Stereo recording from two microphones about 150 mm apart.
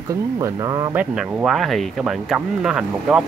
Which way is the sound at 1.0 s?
10° right (ahead or behind).